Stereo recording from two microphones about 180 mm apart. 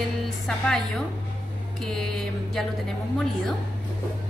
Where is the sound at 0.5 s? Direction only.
5° left (ahead or behind).